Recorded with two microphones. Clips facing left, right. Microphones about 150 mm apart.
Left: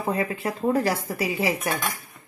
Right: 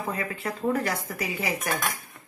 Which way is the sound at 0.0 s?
25° left (ahead or behind).